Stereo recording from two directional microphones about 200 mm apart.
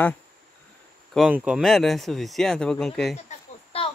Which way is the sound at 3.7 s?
30° left (ahead or behind).